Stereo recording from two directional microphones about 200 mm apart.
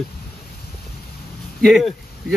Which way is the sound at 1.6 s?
Centre (ahead or behind).